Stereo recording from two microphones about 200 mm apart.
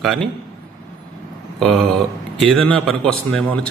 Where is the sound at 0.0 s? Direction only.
Centre (ahead or behind).